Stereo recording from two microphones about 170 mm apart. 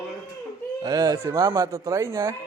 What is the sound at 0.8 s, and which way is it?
A man's voice, 20° right (ahead or behind).